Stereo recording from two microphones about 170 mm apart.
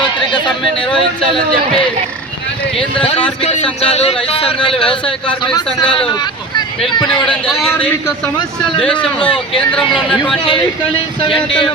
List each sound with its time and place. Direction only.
0.3 s a sound: 25° left (ahead or behind)
2.7 s a man's voice: 35° left (ahead or behind)
7.4 s a man's voice: centre (ahead or behind)
9.7 s a man's voice: 5° left (ahead or behind)
11.2 s a man's voice: 30° left (ahead or behind)